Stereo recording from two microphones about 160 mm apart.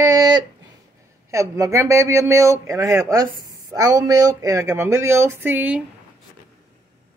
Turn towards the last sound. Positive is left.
turn(degrees=-10)  # may be behind; listen again after turning